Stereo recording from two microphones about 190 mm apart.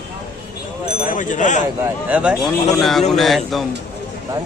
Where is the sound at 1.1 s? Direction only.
40° left (ahead or behind).